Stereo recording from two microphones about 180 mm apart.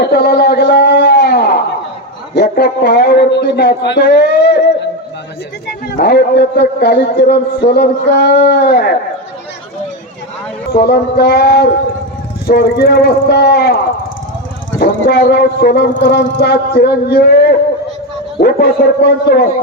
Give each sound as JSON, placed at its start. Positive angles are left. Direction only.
{"t": 0.0, "sound": "a sound", "side_deg": 65}
{"t": 2.3, "sound": "a man's voice", "side_deg": 70}
{"t": 5.6, "sound": "a man's voice", "side_deg": 60}
{"t": 10.7, "sound": "a man's voice", "side_deg": 60}
{"t": 14.8, "sound": "a man's voice", "side_deg": 55}